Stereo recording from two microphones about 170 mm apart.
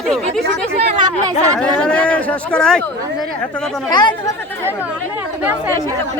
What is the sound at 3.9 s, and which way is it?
Speech, 25° left (ahead or behind).